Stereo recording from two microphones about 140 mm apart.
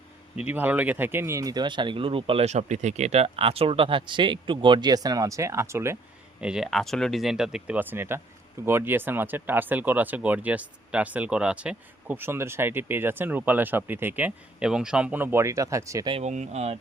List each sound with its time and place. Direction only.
0.3 s speech: 10° right (ahead or behind)
6.4 s speech: 5° right (ahead or behind); by 16.0 s 20° right (ahead or behind)
16.2 s speech: 55° right (ahead or behind)